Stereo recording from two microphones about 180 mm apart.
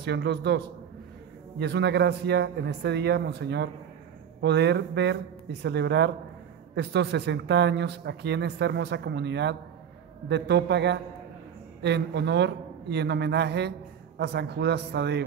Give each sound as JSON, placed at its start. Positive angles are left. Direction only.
{"t": 0.0, "sound": "a man's voice", "side_deg": -70}
{"t": 1.6, "sound": "a man's voice", "side_deg": -70}